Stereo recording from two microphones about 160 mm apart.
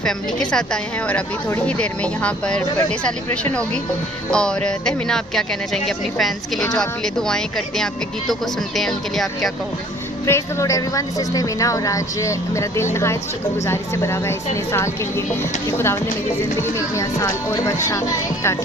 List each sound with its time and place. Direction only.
0.0 s a woman's voice: 5° left (ahead or behind)
4.3 s speech: 5° left (ahead or behind)
10.2 s a woman's voice: 20° left (ahead or behind)
16.6 s a woman's voice: 20° left (ahead or behind)